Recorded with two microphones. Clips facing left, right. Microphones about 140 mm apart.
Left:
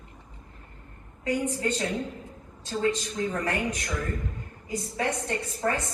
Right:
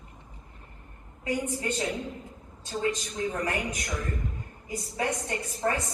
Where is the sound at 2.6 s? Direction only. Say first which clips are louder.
Left 3 dB; 20° right (ahead or behind).